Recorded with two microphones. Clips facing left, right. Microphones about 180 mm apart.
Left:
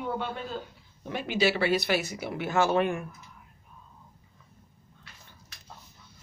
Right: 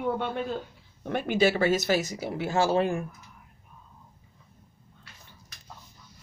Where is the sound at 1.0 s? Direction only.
50° right (ahead or behind); by 3.1 s 30° right (ahead or behind).